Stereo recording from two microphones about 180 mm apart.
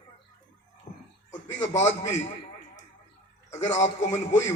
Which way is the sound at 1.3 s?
40° left (ahead or behind).